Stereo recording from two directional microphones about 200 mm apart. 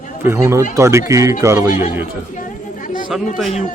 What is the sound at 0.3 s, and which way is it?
A man's voice, 10° right (ahead or behind).